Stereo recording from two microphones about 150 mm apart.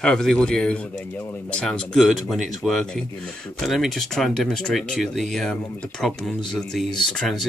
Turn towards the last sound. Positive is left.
turn(degrees=0)  # may be behind; listen again after turning